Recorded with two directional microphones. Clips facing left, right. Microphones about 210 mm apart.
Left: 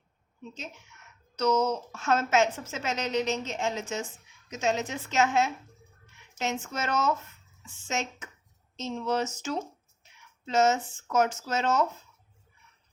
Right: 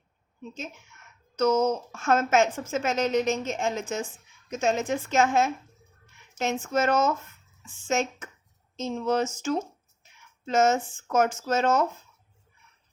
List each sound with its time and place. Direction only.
1.4 s a woman's voice: 50° right (ahead or behind)